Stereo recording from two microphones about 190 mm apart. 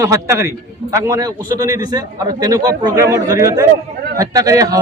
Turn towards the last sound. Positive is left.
turn(degrees=-20)  # may be behind; listen again after turning